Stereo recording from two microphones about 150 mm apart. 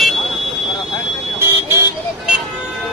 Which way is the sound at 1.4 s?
20° right (ahead or behind).